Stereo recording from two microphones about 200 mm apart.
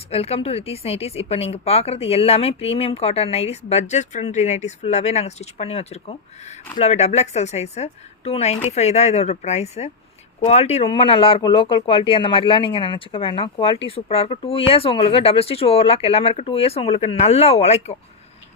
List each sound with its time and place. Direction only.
0.1 s a woman's voice: 30° left (ahead or behind)